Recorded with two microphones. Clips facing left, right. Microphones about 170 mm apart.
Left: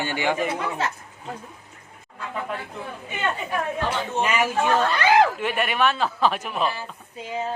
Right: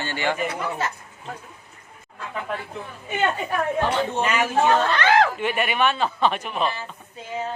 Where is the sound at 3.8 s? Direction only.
5° left (ahead or behind).